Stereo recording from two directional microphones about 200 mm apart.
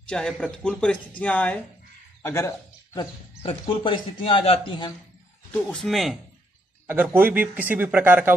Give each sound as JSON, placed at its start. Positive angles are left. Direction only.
{"t": 0.0, "sound": "speech", "side_deg": 5}
{"t": 5.5, "sound": "speech", "side_deg": 5}
{"t": 6.9, "sound": "a man's voice", "side_deg": -10}